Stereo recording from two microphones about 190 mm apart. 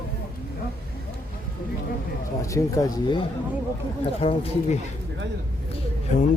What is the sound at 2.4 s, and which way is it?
Speech, 15° left (ahead or behind).